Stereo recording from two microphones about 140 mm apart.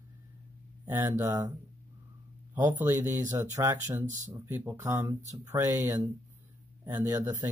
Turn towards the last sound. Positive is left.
turn(degrees=-20)  # may be behind; listen again after turning